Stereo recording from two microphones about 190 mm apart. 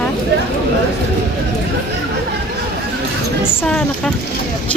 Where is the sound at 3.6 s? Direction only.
5° left (ahead or behind).